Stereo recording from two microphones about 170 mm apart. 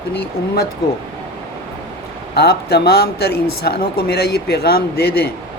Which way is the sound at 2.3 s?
70° left (ahead or behind).